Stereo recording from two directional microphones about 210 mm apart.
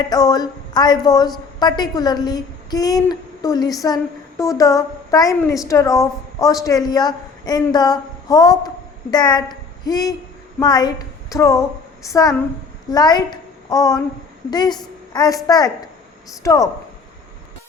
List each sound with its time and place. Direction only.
0.1 s a woman's voice: 20° left (ahead or behind)